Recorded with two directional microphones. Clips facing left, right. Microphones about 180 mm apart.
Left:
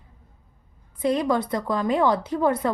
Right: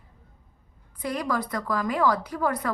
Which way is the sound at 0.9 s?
25° left (ahead or behind).